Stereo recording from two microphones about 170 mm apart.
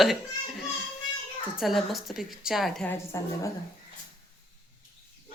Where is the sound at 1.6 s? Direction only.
Centre (ahead or behind).